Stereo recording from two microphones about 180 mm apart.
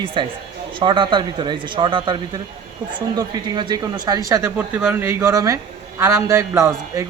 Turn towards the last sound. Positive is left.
turn(degrees=-15)  # may be behind; listen again after turning